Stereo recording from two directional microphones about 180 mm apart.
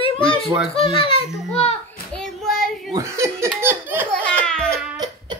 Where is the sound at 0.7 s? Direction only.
30° left (ahead or behind).